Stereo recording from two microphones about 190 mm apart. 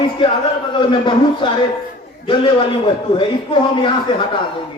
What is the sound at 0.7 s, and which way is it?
A man's voice, 25° left (ahead or behind).